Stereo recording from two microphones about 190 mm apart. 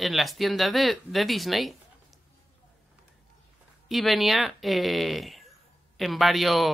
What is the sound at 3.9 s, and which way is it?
Speech, centre (ahead or behind).